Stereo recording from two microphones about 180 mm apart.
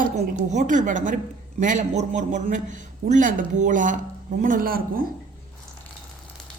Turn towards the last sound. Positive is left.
turn(degrees=-55)  # may be behind; listen again after turning